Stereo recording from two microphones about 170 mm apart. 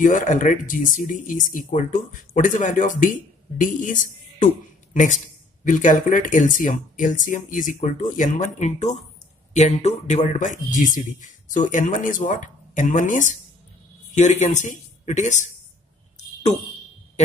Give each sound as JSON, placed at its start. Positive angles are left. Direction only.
{"t": 0.0, "sound": "speech", "side_deg": 45}